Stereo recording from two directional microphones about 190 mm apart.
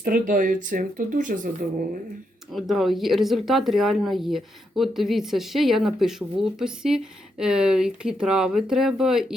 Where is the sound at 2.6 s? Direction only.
Centre (ahead or behind).